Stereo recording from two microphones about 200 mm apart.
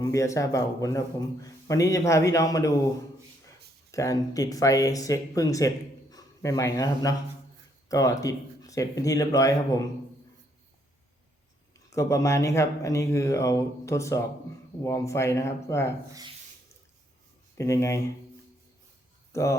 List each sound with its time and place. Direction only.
0.0 s speech: 15° left (ahead or behind)
3.9 s speech: 15° left (ahead or behind)
11.9 s speech: 15° left (ahead or behind)
17.6 s speech: 15° left (ahead or behind)
19.3 s speech: 15° left (ahead or behind)